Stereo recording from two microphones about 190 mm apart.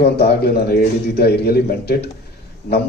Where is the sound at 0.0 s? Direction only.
55° left (ahead or behind).